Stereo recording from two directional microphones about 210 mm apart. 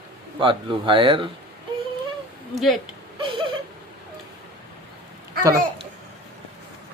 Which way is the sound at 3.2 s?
25° right (ahead or behind).